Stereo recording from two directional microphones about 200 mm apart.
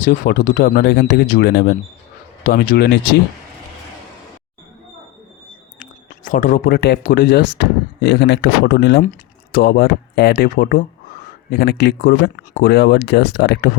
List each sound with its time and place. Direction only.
0.0 s speech: 45° left (ahead or behind)
5.8 s speech: 40° left (ahead or behind)
8.0 s speech: 60° left (ahead or behind)